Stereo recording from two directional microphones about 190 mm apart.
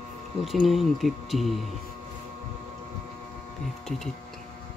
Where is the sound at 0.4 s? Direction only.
Centre (ahead or behind).